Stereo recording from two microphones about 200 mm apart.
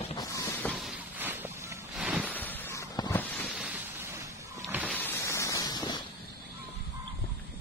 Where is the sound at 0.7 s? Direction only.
Centre (ahead or behind).